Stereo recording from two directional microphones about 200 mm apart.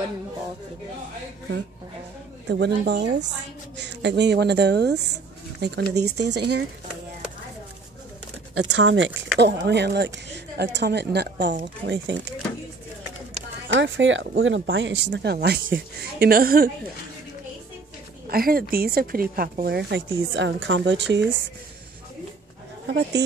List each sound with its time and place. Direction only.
2.4 s speech: 55° right (ahead or behind)
8.5 s speech: 70° right (ahead or behind)
13.7 s speech: 65° right (ahead or behind); by 16.7 s 50° right (ahead or behind)
18.3 s speech: 50° right (ahead or behind); by 21.4 s 65° right (ahead or behind)
23.2 s speech: 60° right (ahead or behind)